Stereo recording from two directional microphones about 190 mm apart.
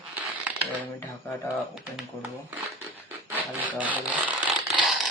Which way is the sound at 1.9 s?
5° right (ahead or behind).